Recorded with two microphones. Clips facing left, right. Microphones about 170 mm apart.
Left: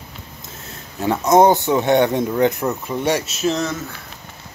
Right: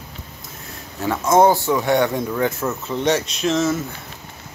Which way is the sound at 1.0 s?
20° left (ahead or behind).